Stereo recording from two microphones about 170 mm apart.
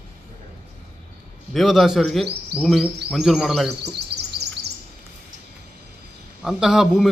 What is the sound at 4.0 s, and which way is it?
Bird, 75° right (ahead or behind).